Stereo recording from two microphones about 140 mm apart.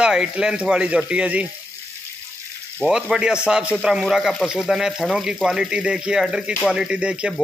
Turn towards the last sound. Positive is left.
turn(degrees=-5)  # may be behind; listen again after turning